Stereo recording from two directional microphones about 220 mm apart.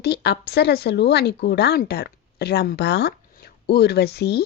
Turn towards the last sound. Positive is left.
turn(degrees=45)  # may be behind; listen again after turning